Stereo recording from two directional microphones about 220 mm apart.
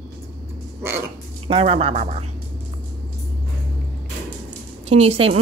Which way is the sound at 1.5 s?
25° right (ahead or behind).